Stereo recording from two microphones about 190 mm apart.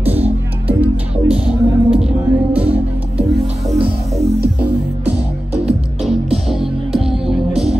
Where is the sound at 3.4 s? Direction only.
30° right (ahead or behind).